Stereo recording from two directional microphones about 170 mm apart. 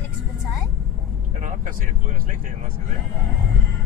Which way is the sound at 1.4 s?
50° right (ahead or behind).